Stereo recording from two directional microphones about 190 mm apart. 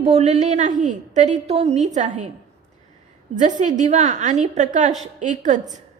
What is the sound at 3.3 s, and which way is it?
A woman's voice, 40° right (ahead or behind).